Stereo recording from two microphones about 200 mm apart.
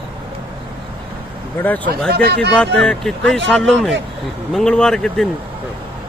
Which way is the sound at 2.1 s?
50° right (ahead or behind).